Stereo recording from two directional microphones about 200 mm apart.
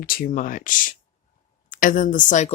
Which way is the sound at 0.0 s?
45° left (ahead or behind).